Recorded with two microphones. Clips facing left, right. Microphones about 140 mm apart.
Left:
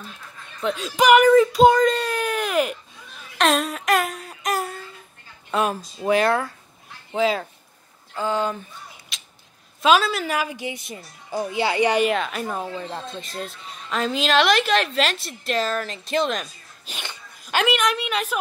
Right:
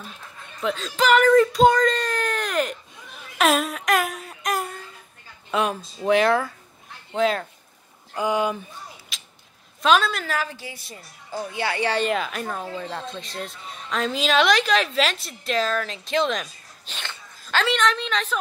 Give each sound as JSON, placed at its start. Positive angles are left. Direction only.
{"t": 0.7, "sound": "speech", "side_deg": 15}
{"t": 1.3, "sound": "speech", "side_deg": 5}
{"t": 3.3, "sound": "a sound", "side_deg": -5}
{"t": 5.5, "sound": "a woman's voice", "side_deg": 0}
{"t": 8.1, "sound": "speech", "side_deg": -15}
{"t": 9.1, "sound": "creak", "side_deg": 0}
{"t": 9.8, "sound": "speech", "side_deg": 5}
{"t": 12.1, "sound": "a woman's voice", "side_deg": 0}
{"t": 12.5, "sound": "a woman's voice", "side_deg": 15}
{"t": 16.9, "sound": "speech", "side_deg": 15}